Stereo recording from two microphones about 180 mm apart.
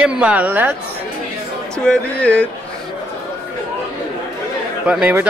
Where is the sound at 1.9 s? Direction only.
5° left (ahead or behind).